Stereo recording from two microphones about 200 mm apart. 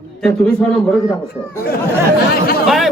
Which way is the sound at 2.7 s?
Centre (ahead or behind).